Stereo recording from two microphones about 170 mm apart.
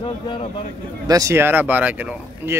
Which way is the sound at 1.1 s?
20° right (ahead or behind).